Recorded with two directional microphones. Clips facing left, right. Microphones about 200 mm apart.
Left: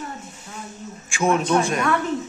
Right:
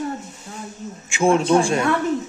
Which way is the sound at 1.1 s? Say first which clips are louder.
Right 3 dB; 25° right (ahead or behind).